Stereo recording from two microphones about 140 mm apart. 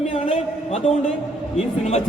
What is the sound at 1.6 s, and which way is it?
Speech, 55° left (ahead or behind).